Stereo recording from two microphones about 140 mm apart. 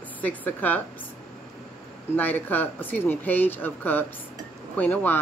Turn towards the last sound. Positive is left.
turn(degrees=10)  # may be behind; listen again after turning